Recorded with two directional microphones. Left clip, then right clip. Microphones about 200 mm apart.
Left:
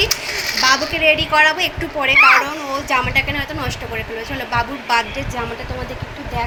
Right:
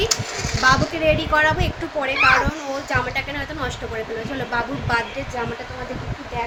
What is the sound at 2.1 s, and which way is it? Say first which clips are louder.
Speech: left 6 dB; 25° right (ahead or behind).